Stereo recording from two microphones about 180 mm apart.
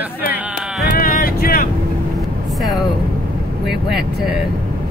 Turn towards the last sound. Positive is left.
turn(degrees=0)  # may be behind; listen again after turning